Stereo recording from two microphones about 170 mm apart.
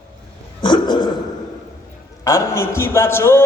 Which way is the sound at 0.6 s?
25° left (ahead or behind).